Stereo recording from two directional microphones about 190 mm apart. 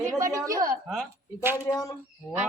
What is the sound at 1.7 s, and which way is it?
Speech, 20° left (ahead or behind).